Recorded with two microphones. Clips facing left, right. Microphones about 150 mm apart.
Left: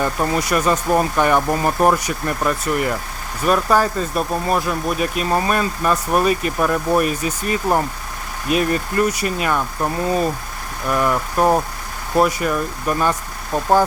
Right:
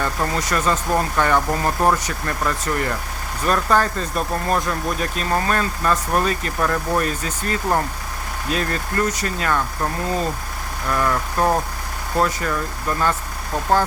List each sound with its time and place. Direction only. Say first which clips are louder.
0.0 s speech: left 3 dB; 10° left (ahead or behind)